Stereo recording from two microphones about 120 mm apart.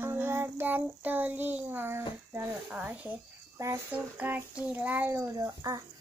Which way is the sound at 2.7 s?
10° right (ahead or behind).